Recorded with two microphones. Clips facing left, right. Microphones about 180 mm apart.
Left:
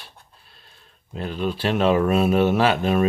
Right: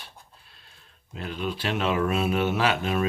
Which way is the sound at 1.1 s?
40° left (ahead or behind).